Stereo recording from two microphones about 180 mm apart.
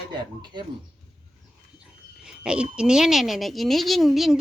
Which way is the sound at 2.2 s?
5° right (ahead or behind).